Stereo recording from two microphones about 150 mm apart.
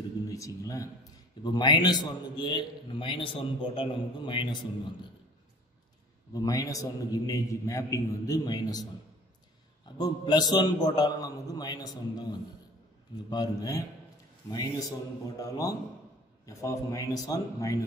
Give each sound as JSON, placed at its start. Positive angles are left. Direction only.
{"t": 0.3, "sound": "a man's voice", "side_deg": 20}
{"t": 6.3, "sound": "a man's voice", "side_deg": 25}
{"t": 9.9, "sound": "a man's voice", "side_deg": 25}